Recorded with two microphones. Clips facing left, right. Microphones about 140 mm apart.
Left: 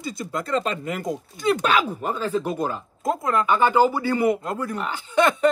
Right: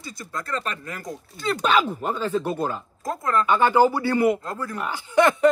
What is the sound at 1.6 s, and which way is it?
Speech, 10° left (ahead or behind).